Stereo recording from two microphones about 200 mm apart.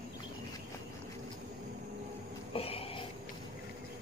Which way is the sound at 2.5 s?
30° left (ahead or behind).